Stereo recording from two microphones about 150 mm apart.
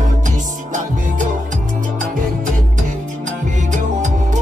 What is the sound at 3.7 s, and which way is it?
Music, 55° right (ahead or behind).